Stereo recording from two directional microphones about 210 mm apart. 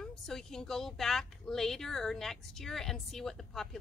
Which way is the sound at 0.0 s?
Centre (ahead or behind).